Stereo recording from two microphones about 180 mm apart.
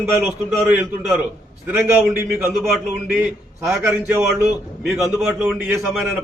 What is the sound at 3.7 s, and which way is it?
A man's voice, 15° right (ahead or behind).